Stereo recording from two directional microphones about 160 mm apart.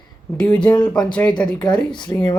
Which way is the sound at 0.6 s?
25° left (ahead or behind).